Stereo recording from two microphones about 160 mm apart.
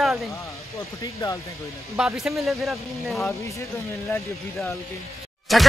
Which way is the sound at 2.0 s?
5° right (ahead or behind).